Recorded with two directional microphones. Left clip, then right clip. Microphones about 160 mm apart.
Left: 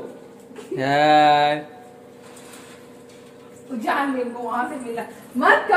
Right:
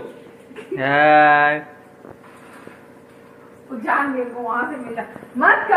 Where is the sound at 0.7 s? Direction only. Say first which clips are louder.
Right 3 dB; 25° left (ahead or behind).